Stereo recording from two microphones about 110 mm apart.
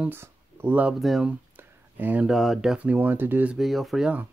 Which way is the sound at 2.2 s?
Centre (ahead or behind).